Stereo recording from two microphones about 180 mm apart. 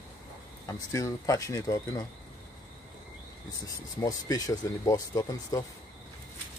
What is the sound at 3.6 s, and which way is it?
Speech, 20° left (ahead or behind).